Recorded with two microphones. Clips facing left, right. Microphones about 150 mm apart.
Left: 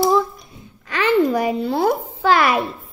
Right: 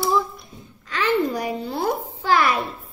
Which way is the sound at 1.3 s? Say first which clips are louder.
Left 6 dB; 85° left.